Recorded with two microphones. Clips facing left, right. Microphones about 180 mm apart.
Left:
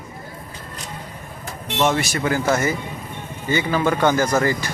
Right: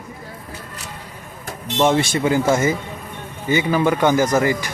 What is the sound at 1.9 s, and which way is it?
Speech, 25° right (ahead or behind).